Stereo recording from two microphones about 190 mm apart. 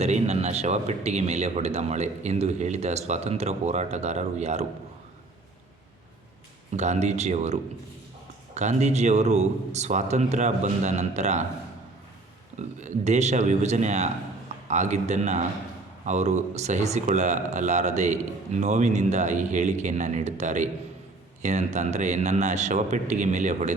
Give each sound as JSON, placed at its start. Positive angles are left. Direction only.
{"t": 0.0, "sound": "speech", "side_deg": -35}
{"t": 6.7, "sound": "speech", "side_deg": -35}
{"t": 12.8, "sound": "speech", "side_deg": -35}